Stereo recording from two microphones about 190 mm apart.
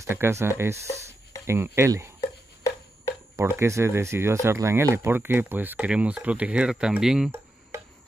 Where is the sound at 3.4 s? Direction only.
15° right (ahead or behind).